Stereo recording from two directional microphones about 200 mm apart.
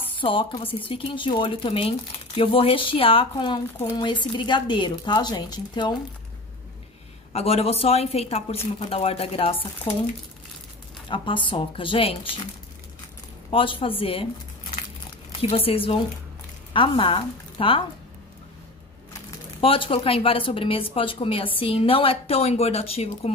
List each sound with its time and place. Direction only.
0.2 s a woman's voice: 25° left (ahead or behind)
7.3 s a woman's voice: 30° left (ahead or behind)
11.1 s a woman's voice: 25° left (ahead or behind)
13.5 s a woman's voice: 25° left (ahead or behind)
15.4 s a woman's voice: 30° left (ahead or behind)
19.6 s a woman's voice: 25° left (ahead or behind)